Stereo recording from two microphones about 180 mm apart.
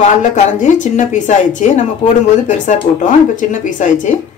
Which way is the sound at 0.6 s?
40° left (ahead or behind).